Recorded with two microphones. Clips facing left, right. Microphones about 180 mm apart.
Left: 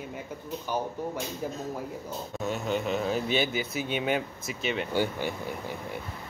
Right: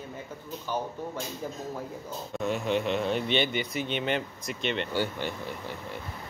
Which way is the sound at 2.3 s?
Centre (ahead or behind).